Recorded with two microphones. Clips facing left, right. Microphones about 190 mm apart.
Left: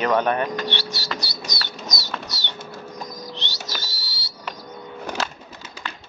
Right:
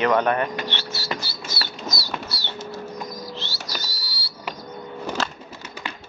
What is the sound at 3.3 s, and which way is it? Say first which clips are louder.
Bird: right 1 dB; 20° left (ahead or behind).